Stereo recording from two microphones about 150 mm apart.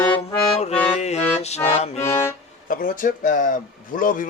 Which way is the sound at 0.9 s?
50° left (ahead or behind).